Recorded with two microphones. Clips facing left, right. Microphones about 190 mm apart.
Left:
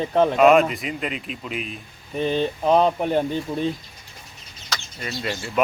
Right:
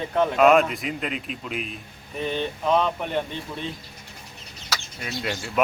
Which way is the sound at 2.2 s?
30° left (ahead or behind).